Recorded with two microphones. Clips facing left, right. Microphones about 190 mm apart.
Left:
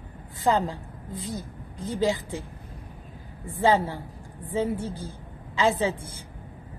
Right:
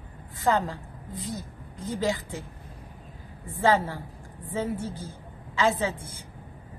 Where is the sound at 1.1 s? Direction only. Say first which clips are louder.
Left 1 dB; 35° left (ahead or behind).